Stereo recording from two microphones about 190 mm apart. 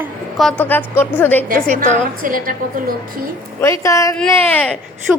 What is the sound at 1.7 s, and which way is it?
A woman's voice, 50° right (ahead or behind).